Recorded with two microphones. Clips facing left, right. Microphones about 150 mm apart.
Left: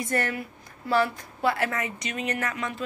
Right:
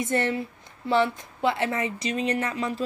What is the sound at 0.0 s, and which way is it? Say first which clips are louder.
A woman's voice: right 3 dB; 25° right (ahead or behind).